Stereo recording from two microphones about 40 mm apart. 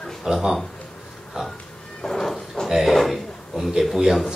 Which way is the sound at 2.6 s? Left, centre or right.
Centre.